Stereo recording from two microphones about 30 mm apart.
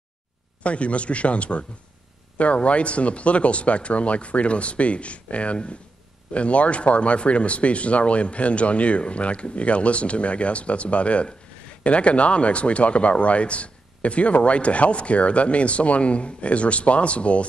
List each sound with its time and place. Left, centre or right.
0.7 s speech: left